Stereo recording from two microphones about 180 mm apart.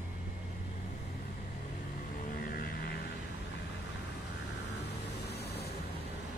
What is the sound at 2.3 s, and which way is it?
Music, 55° left (ahead or behind).